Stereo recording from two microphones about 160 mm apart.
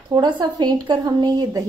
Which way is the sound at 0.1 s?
25° right (ahead or behind).